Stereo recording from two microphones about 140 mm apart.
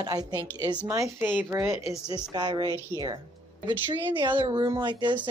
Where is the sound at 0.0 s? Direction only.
30° right (ahead or behind).